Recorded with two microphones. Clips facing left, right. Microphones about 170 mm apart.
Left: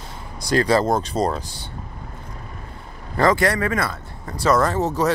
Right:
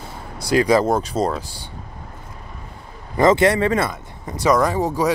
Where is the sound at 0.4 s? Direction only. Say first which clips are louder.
Right 2 dB; 10° right (ahead or behind).